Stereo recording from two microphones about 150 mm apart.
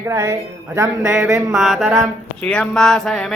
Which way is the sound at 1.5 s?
Centre (ahead or behind).